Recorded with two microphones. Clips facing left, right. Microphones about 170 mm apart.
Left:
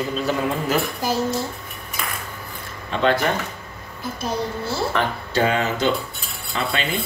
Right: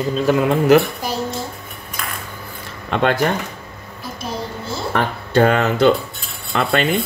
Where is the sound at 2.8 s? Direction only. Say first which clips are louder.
Right 2 dB; 60° right (ahead or behind).